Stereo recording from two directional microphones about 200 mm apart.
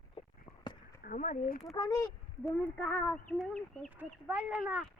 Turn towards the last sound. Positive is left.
turn(degrees=-5)  # may be behind; listen again after turning